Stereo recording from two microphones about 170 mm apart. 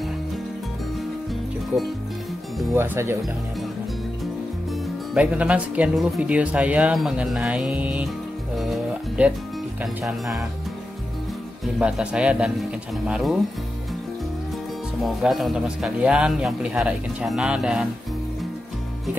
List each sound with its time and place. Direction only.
2.7 s speech: 15° right (ahead or behind)
5.1 s speech: 5° right (ahead or behind)
8.5 s music: 5° right (ahead or behind)
11.6 s a man's voice: 5° right (ahead or behind)
15.0 s a man's voice: centre (ahead or behind)